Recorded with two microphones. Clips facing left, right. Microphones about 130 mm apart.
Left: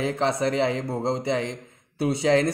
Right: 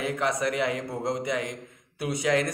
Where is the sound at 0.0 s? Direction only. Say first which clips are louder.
Left 3 dB; 30° left (ahead or behind).